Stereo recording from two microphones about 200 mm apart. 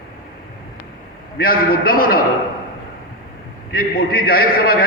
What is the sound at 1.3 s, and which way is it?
Speech, 45° left (ahead or behind).